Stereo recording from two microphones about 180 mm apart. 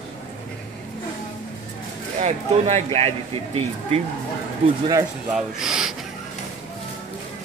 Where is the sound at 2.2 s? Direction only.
35° right (ahead or behind).